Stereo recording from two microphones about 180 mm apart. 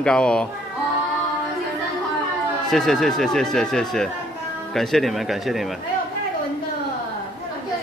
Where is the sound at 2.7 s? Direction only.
Centre (ahead or behind).